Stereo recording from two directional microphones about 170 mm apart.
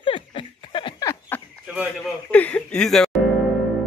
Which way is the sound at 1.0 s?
10° left (ahead or behind).